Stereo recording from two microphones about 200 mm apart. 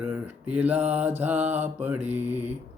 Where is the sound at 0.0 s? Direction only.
5° right (ahead or behind).